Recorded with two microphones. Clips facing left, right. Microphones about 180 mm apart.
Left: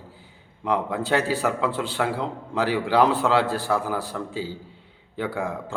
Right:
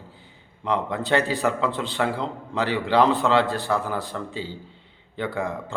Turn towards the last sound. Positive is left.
turn(degrees=10)  # may be behind; listen again after turning